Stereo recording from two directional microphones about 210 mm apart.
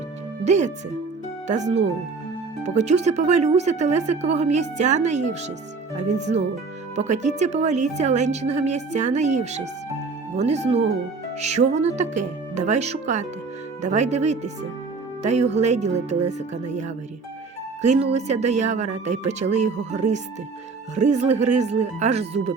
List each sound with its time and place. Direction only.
0.4 s speech: 35° right (ahead or behind)
17.8 s speech: 30° right (ahead or behind)